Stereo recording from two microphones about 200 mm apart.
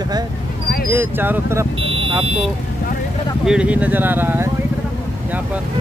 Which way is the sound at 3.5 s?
5° right (ahead or behind).